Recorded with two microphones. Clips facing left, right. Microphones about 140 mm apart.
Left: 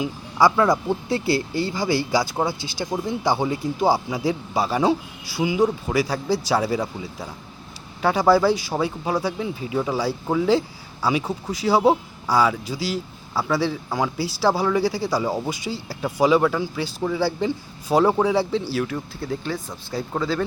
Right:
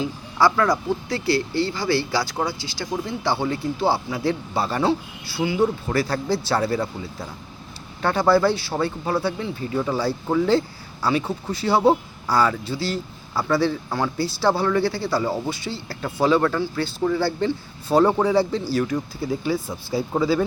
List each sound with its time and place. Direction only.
0.0 s speech: 15° left (ahead or behind); by 20.4 s 5° right (ahead or behind)